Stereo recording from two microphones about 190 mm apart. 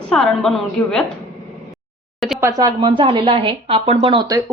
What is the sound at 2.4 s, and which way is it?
A woman's voice, 15° right (ahead or behind).